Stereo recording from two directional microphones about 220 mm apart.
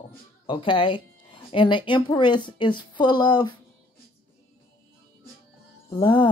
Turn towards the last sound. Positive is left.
turn(degrees=20)  # may be behind; listen again after turning